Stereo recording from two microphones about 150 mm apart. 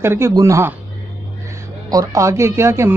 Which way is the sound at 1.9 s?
20° right (ahead or behind).